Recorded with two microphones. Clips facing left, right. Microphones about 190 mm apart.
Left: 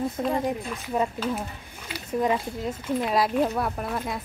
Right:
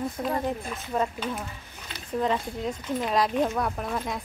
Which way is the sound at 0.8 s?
5° left (ahead or behind).